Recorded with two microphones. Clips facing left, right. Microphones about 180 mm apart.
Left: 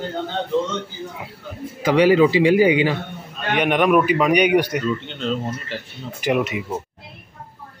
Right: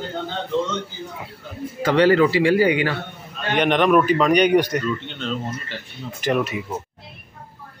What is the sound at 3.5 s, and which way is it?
A man's voice, 5° left (ahead or behind).